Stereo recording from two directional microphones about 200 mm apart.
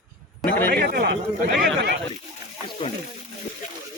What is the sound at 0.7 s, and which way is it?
Speech, 50° right (ahead or behind).